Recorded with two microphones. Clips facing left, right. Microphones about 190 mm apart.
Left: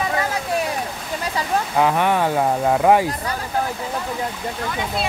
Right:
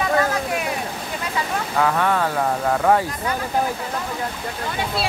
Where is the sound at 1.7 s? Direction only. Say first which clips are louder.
Left 1 dB; 20° left (ahead or behind).